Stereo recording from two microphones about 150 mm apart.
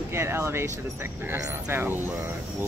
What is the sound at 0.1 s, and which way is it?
Speech, 15° right (ahead or behind).